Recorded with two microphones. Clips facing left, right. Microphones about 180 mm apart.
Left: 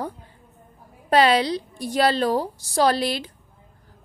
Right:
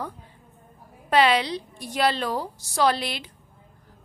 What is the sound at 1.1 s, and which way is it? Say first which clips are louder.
A woman's voice: left 3 dB; 40° left (ahead or behind).